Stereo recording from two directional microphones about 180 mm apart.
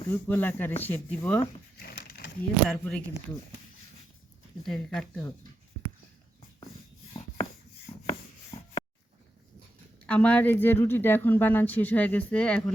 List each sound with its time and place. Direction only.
0.1 s speech: 10° left (ahead or behind)
1.8 s a sound: 60° left (ahead or behind)
2.6 s speech: 5° left (ahead or behind)
4.6 s speech: 5° left (ahead or behind)
7.1 s a sound: 30° left (ahead or behind)
10.1 s speech: 10° left (ahead or behind)